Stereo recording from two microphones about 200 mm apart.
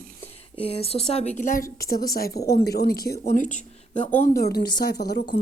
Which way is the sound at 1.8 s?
50° left (ahead or behind).